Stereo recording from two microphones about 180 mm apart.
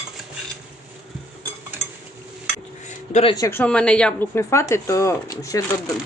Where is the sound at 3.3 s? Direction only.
15° left (ahead or behind).